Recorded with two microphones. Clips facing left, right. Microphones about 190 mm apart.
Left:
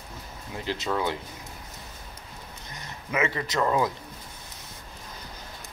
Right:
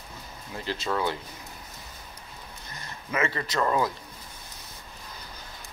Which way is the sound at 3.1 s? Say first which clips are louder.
Left 1 dB; 15° left (ahead or behind).